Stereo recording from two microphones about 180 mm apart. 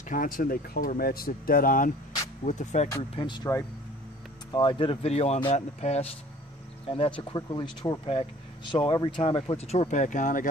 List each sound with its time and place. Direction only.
0.1 s speech: 50° left (ahead or behind)
2.4 s speech: 40° left (ahead or behind)
3.0 s speech: 25° left (ahead or behind); by 10.5 s 45° left (ahead or behind)